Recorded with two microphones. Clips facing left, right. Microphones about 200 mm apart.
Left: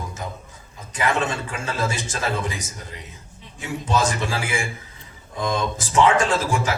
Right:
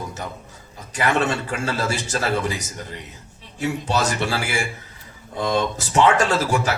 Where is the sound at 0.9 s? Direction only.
70° right (ahead or behind).